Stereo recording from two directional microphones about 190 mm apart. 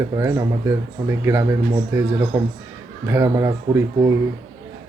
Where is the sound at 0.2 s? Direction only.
15° right (ahead or behind).